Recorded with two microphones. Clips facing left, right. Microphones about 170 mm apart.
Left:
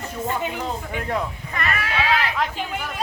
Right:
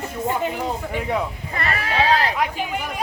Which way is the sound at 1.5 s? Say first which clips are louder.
Right 2 dB; 30° right (ahead or behind).